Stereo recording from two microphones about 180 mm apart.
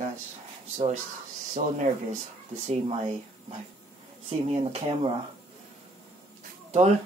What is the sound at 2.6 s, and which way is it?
Speech, 35° right (ahead or behind).